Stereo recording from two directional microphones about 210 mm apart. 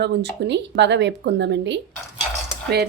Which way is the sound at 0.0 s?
55° right (ahead or behind).